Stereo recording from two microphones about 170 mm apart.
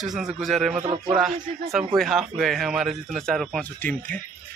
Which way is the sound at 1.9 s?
Centre (ahead or behind).